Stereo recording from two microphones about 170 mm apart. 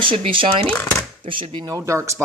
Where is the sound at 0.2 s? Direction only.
30° right (ahead or behind).